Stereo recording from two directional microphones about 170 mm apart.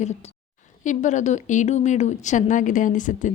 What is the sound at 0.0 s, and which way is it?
A woman's voice, 40° left (ahead or behind).